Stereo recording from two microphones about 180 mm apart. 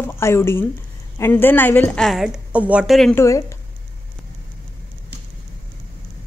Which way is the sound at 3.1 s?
15° left (ahead or behind).